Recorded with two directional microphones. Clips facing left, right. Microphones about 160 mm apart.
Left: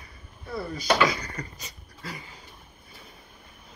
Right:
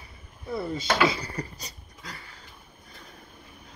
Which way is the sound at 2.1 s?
15° left (ahead or behind).